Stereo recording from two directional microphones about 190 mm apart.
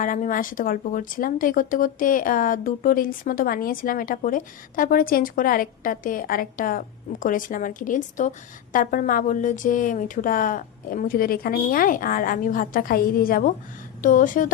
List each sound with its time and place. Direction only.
0.0 s speech: 45° left (ahead or behind)